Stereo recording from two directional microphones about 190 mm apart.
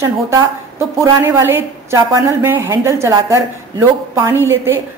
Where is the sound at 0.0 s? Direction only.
15° right (ahead or behind).